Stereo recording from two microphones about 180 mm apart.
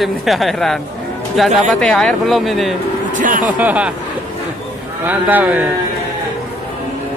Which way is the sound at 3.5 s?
10° right (ahead or behind).